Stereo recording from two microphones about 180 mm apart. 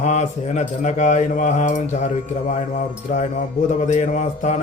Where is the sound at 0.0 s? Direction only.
40° left (ahead or behind).